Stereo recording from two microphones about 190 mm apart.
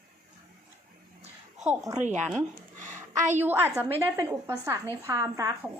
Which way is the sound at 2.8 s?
40° right (ahead or behind).